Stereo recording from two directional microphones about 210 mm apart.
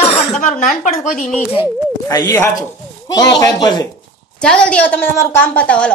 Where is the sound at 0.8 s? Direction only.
35° left (ahead or behind).